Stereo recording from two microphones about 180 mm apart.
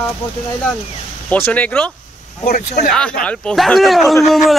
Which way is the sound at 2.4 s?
50° left (ahead or behind).